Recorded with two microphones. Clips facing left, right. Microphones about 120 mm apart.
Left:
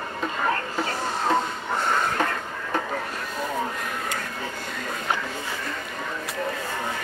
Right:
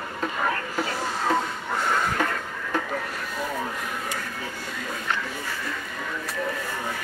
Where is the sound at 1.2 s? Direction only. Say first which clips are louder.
Left 1 dB; 25° left (ahead or behind).